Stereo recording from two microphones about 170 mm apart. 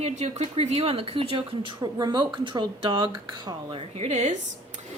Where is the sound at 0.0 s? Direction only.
40° right (ahead or behind).